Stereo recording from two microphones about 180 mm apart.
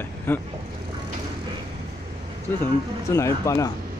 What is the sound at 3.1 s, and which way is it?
Speech, 15° left (ahead or behind).